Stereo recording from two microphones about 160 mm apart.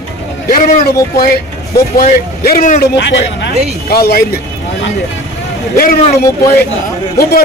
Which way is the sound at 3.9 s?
75° left (ahead or behind).